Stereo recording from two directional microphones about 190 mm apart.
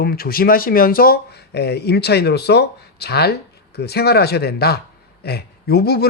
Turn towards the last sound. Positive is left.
turn(degrees=55)  # may be behind; listen again after turning